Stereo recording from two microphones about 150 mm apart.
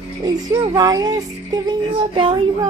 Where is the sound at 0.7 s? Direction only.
25° right (ahead or behind).